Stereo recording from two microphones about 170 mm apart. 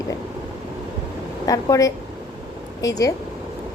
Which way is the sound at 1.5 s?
20° left (ahead or behind).